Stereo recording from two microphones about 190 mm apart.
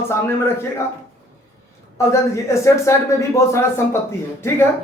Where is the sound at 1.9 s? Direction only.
15° left (ahead or behind).